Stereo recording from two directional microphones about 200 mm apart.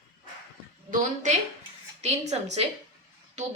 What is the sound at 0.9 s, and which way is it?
A woman's voice, 35° right (ahead or behind).